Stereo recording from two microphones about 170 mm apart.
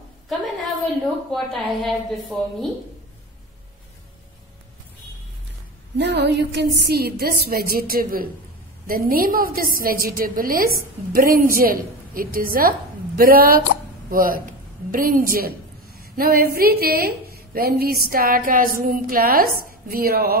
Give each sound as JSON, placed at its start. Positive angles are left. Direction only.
{"t": 1.3, "sound": "a woman's voice", "side_deg": 0}
{"t": 5.9, "sound": "a woman's voice", "side_deg": -85}
{"t": 16.0, "sound": "a sound", "side_deg": -60}
{"t": 16.5, "sound": "a woman's voice", "side_deg": -65}